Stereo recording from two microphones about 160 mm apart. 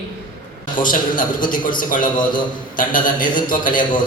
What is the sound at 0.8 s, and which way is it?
A man's voice, 55° left (ahead or behind).